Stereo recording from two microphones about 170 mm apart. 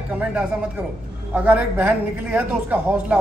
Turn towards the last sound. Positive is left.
turn(degrees=-5)  # may be behind; listen again after turning